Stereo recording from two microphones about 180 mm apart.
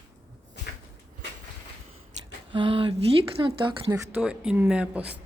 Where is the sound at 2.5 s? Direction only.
25° right (ahead or behind).